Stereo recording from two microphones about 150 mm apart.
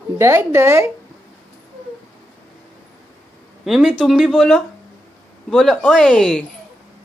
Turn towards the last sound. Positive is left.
turn(degrees=5)  # may be behind; listen again after turning